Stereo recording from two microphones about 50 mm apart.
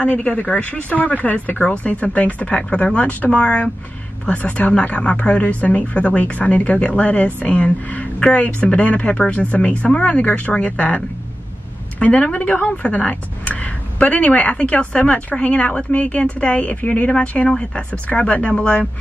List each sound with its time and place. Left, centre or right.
0.0 s a woman's voice: left